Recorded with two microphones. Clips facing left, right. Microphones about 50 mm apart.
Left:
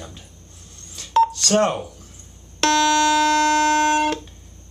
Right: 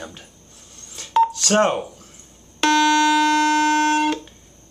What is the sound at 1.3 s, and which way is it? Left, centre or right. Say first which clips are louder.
Speech: right 1 dB; right.